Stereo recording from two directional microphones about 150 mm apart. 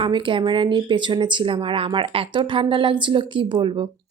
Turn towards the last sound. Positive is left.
turn(degrees=-35)  # may be behind; listen again after turning